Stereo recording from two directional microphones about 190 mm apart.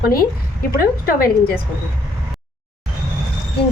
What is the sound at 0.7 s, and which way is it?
Speech, 50° left (ahead or behind).